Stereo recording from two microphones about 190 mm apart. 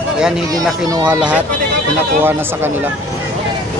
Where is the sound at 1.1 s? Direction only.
5° right (ahead or behind).